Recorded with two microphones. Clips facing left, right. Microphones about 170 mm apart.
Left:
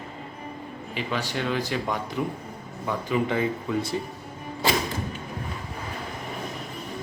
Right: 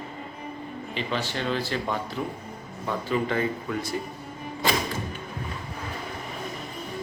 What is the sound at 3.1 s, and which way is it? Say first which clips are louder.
Speech: left 1 dB; 15° left (ahead or behind).